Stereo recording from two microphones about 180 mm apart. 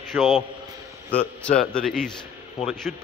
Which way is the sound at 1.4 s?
5° left (ahead or behind).